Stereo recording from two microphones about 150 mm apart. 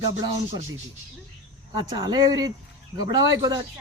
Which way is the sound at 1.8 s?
25° right (ahead or behind).